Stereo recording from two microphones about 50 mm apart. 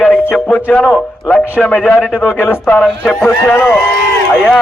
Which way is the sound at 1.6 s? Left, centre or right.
Centre.